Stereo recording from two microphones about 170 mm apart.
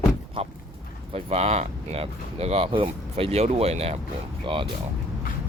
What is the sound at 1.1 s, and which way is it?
Speech, 40° right (ahead or behind).